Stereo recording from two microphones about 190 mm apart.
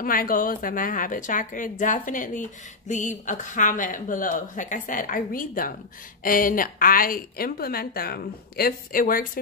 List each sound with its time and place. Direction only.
0.0 s a woman's voice: 50° left (ahead or behind)